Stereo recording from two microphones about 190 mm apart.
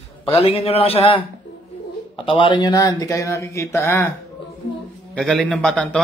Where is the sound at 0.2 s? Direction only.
30° left (ahead or behind).